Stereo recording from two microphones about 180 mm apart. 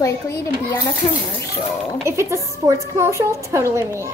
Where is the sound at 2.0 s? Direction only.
15° right (ahead or behind).